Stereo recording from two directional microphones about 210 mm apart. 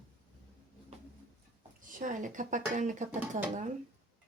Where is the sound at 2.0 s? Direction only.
35° right (ahead or behind).